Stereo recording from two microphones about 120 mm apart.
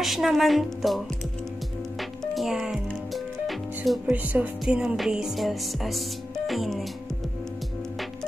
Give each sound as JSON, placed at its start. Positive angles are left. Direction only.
{"t": 0.0, "sound": "music", "side_deg": 0}
{"t": 4.1, "sound": "music", "side_deg": -15}